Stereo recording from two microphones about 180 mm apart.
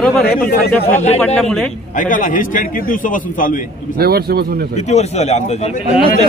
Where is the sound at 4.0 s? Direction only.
60° right (ahead or behind).